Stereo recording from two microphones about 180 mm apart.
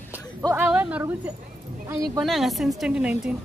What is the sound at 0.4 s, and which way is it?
A woman's voice, 15° right (ahead or behind).